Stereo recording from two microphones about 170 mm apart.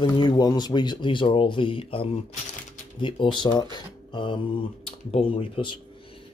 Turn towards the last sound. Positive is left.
turn(degrees=30)  # may be behind; listen again after turning